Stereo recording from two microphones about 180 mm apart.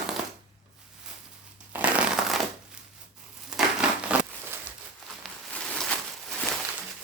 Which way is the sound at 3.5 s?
5° right (ahead or behind).